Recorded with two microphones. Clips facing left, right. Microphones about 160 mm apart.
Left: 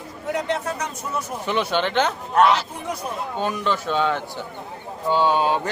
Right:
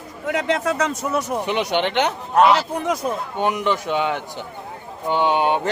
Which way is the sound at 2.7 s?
90° right.